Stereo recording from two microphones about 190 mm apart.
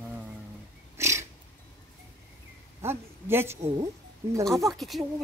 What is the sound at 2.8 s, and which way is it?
Speech, 10° right (ahead or behind).